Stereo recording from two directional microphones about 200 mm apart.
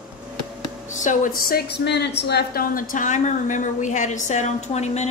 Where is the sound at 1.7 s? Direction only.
55° left (ahead or behind).